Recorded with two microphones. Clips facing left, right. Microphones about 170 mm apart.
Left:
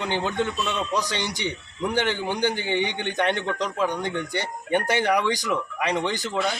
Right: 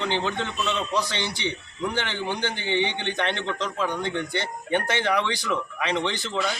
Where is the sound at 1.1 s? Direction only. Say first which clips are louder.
Left 1 dB; 45° left (ahead or behind).